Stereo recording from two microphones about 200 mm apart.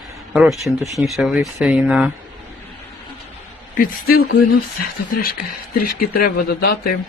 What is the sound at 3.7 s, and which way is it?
Speech, 50° left (ahead or behind).